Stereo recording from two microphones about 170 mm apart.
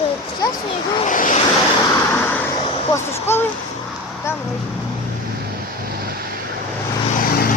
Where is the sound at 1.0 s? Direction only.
50° left (ahead or behind).